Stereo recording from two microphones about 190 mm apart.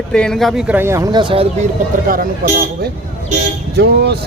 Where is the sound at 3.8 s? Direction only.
60° right (ahead or behind).